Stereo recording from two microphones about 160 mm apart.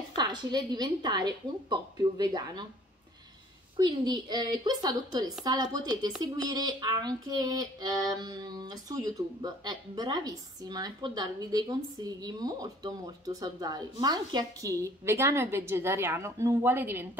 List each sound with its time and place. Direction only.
0.2 s speech: 25° right (ahead or behind)
3.7 s speech: 25° right (ahead or behind)